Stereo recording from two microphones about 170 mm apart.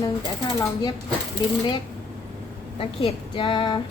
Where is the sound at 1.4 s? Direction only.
25° left (ahead or behind).